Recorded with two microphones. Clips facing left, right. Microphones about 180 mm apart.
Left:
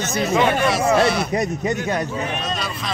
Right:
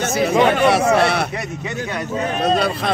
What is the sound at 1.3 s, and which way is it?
Speech, 40° left (ahead or behind).